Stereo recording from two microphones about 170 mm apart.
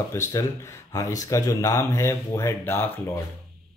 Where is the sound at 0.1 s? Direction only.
15° left (ahead or behind).